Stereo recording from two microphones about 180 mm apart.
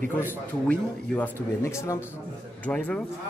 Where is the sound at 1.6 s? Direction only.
15° left (ahead or behind).